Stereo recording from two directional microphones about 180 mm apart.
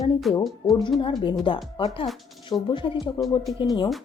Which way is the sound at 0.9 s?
25° left (ahead or behind).